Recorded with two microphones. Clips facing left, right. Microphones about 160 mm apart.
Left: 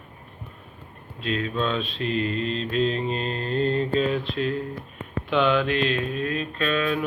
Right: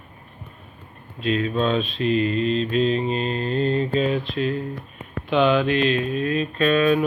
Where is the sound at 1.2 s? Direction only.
15° right (ahead or behind).